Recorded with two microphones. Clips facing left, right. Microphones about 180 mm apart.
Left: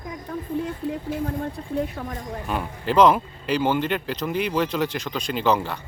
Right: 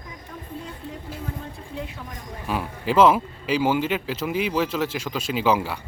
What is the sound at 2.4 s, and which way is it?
Speech, 5° right (ahead or behind).